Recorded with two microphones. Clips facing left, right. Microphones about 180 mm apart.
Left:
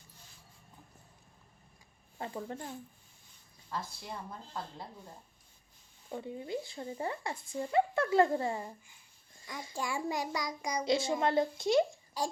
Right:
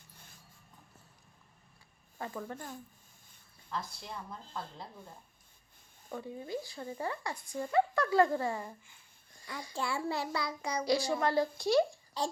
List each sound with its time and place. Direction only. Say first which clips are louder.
2.1 s speech: left 1 dB; 25° left (ahead or behind)
6.1 s a child's voice: left 1 dB; 20° left (ahead or behind)
12.2 s a child's voice: even; 10° left (ahead or behind)